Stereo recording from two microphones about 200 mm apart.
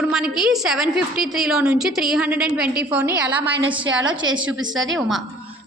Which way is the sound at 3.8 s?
75° right (ahead or behind).